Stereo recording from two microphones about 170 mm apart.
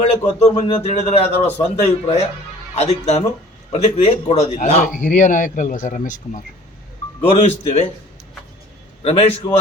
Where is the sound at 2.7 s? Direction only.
40° left (ahead or behind).